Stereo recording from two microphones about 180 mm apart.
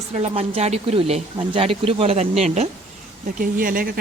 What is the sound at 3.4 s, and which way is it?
Speech, 50° right (ahead or behind).